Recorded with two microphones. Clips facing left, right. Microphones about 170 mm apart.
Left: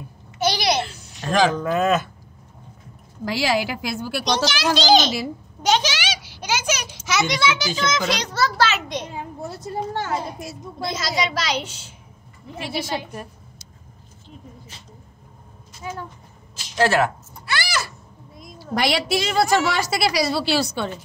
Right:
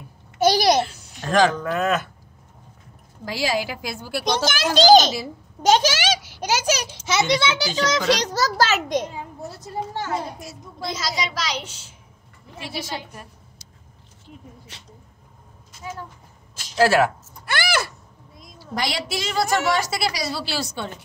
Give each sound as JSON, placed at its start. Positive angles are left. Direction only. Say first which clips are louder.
{"t": 0.4, "sound": "a sound", "louder": "right 4 dB", "side_deg": -45}
{"t": 1.2, "sound": "speech", "louder": "right 1 dB", "side_deg": 5}
{"t": 1.6, "sound": "speech", "louder": "left 3 dB", "side_deg": 20}
{"t": 3.3, "sound": "a woman's voice", "louder": "left 2 dB", "side_deg": 75}
{"t": 4.2, "sound": "a child's voice", "louder": "even", "side_deg": -50}
{"t": 9.6, "sound": "a woman's voice", "louder": "left 2 dB", "side_deg": 60}
{"t": 12.5, "sound": "a woman's voice", "louder": "left 4 dB", "side_deg": 65}
{"t": 16.7, "sound": "speech", "louder": "right 2 dB", "side_deg": -10}
{"t": 17.5, "sound": "a sound", "louder": "right 2 dB", "side_deg": -55}
{"t": 18.4, "sound": "a woman's voice", "louder": "left 4 dB", "side_deg": 65}